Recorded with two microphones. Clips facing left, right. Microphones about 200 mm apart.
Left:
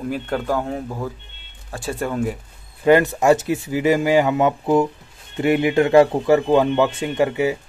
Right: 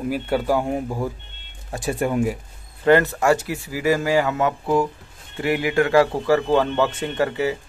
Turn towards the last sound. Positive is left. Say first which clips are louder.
# left 3 dB
turn(degrees=15)  # may be behind; listen again after turning